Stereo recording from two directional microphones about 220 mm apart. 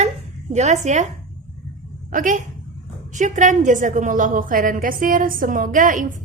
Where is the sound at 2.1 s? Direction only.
35° right (ahead or behind).